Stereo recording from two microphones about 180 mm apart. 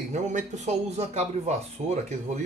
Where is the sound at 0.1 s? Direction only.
40° right (ahead or behind).